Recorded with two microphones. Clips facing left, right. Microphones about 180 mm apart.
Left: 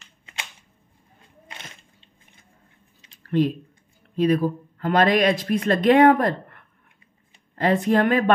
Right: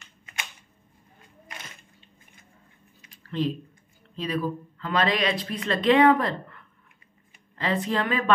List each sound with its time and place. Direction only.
3.3 s speech: 50° left (ahead or behind)
7.5 s speech: 50° left (ahead or behind)